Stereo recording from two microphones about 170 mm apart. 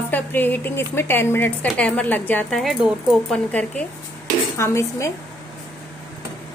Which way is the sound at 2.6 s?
5° right (ahead or behind).